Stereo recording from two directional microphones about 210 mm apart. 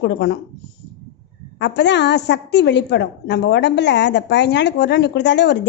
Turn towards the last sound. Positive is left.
turn(degrees=55)  # may be behind; listen again after turning